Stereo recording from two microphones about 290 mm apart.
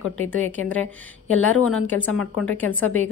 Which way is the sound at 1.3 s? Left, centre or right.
Left.